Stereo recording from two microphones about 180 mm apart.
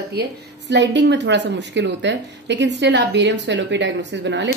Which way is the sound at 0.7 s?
75° right (ahead or behind).